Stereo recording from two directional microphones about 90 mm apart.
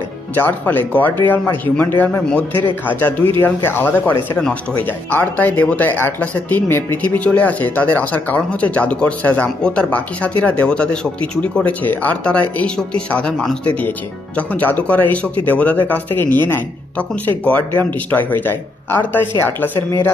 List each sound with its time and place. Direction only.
0.3 s speech: 20° left (ahead or behind)
13.7 s speech: 20° left (ahead or behind)